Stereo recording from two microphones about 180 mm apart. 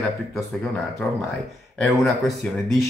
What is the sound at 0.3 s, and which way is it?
Speech, centre (ahead or behind).